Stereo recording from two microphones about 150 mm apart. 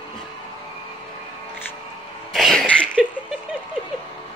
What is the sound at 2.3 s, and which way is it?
Cough, centre (ahead or behind).